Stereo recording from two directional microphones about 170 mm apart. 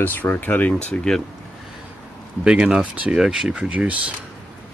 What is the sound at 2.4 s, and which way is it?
Speech, 5° right (ahead or behind).